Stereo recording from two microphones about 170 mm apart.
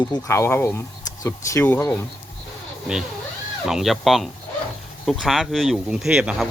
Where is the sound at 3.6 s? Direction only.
Centre (ahead or behind).